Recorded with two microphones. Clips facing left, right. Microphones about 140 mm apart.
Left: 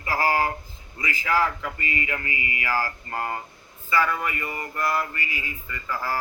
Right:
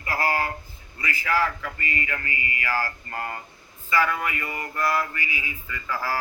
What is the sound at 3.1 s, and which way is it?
Speech, 25° left (ahead or behind).